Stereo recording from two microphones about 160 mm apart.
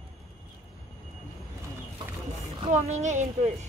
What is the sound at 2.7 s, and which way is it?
Speech, 45° right (ahead or behind).